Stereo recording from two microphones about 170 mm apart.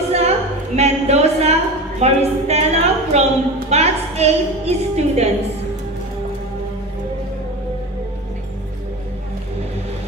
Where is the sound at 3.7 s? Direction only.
40° right (ahead or behind).